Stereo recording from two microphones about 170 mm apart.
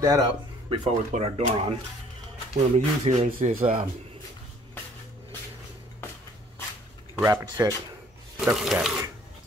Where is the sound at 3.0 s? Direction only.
35° right (ahead or behind).